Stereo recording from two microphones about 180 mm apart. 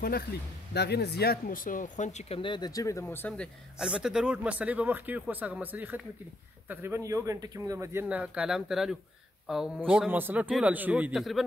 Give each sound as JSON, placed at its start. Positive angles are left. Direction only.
{"t": 0.0, "sound": "speech", "side_deg": 60}
{"t": 3.7, "sound": "speech", "side_deg": -5}